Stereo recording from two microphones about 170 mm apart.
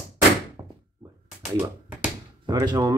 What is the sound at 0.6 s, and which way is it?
Thunk, 20° right (ahead or behind).